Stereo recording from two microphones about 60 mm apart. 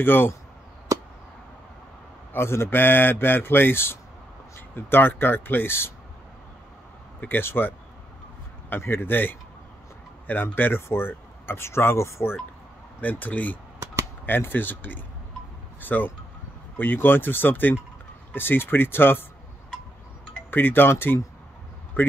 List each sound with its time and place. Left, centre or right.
0.0 s speech: left
2.3 s speech: left
7.2 s speech: left
13.0 s speech: left
20.5 s speech: left
22.0 s speech: left